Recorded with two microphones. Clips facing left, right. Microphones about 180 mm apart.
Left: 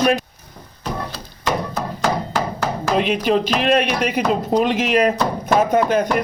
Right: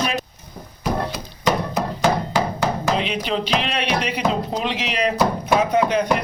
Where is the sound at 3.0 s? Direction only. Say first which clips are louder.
Left 6 dB; 50° left (ahead or behind).